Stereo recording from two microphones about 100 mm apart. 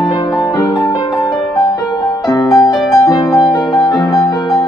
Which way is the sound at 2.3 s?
35° left (ahead or behind).